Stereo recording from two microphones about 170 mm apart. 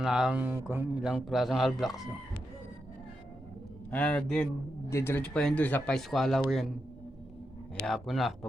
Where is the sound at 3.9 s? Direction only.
10° left (ahead or behind).